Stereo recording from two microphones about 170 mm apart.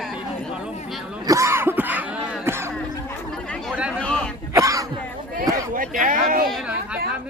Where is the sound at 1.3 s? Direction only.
15° right (ahead or behind).